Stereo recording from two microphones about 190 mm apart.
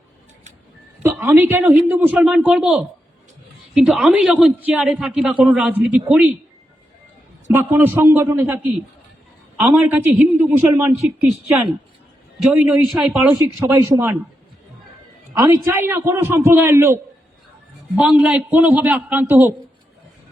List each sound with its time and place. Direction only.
1.0 s a man's voice: 10° right (ahead or behind)
7.5 s a man's voice: 10° right (ahead or behind)
13.4 s a man's voice: 15° right (ahead or behind)
15.4 s a man's voice: 15° right (ahead or behind)